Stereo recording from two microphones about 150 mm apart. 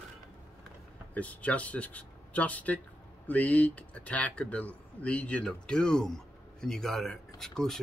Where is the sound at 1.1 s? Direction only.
10° left (ahead or behind).